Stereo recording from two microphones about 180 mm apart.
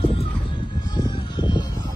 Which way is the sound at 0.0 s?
30° left (ahead or behind).